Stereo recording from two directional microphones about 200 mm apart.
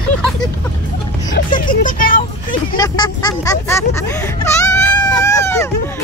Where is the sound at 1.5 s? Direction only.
40° left (ahead or behind).